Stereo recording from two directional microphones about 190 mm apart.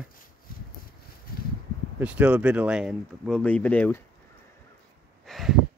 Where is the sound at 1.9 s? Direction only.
5° right (ahead or behind); by 4.0 s 10° left (ahead or behind).